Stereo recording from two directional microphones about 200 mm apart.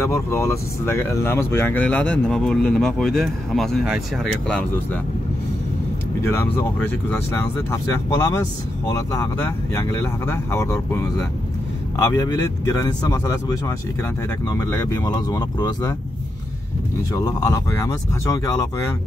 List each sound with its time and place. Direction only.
0.0 s speech: 15° left (ahead or behind)
6.2 s speech: 10° left (ahead or behind)
17.1 s speech: 15° left (ahead or behind)